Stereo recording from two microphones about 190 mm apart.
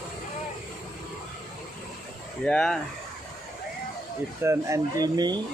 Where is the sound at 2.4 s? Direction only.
5° left (ahead or behind).